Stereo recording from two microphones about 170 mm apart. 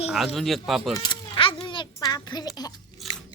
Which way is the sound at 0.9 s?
25° left (ahead or behind).